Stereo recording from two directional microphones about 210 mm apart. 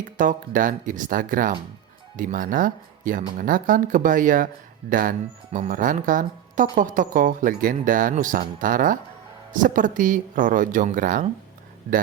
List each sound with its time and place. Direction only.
0.2 s speech: 40° right (ahead or behind)